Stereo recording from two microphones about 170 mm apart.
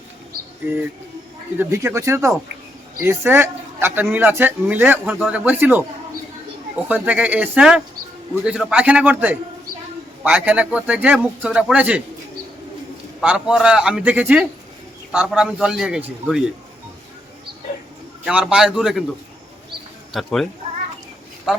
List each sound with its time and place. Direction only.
1.5 s a man's voice: 15° right (ahead or behind)
6.8 s a man's voice: 10° right (ahead or behind)
13.1 s a man's voice: 5° right (ahead or behind)
18.3 s a man's voice: 5° right (ahead or behind)
20.1 s a man's voice: centre (ahead or behind)